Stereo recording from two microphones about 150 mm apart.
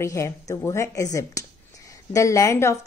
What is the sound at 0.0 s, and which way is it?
A woman's voice, 20° left (ahead or behind).